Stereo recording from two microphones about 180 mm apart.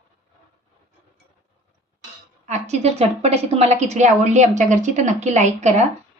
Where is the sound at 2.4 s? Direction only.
40° right (ahead or behind).